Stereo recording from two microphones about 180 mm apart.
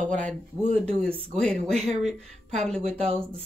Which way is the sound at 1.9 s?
40° right (ahead or behind).